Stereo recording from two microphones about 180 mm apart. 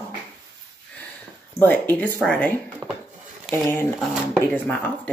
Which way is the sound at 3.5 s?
10° left (ahead or behind).